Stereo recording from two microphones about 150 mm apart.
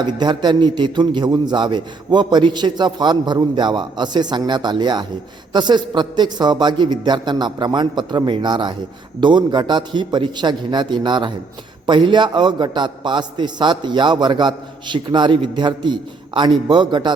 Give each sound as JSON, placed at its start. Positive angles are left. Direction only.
{"t": 0.0, "sound": "a man's voice", "side_deg": -30}